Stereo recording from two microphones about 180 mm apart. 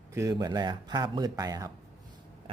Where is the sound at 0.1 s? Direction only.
20° right (ahead or behind).